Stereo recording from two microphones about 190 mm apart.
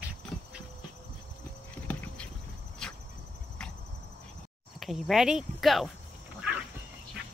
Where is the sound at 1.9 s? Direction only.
10° left (ahead or behind).